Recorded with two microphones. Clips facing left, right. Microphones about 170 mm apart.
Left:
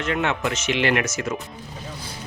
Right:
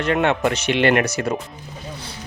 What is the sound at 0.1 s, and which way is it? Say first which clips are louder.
Speech: right 5 dB; 50° right (ahead or behind).